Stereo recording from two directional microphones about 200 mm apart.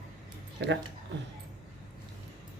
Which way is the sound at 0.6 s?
60° right (ahead or behind).